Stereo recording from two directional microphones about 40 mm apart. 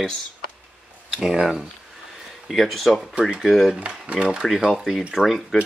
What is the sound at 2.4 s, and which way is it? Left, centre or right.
Speech, centre.